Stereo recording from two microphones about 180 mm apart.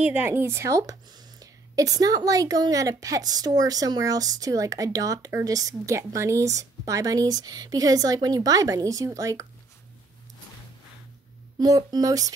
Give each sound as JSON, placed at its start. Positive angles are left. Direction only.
{"t": 0.0, "sound": "speech", "side_deg": -10}
{"t": 11.6, "sound": "speech", "side_deg": -20}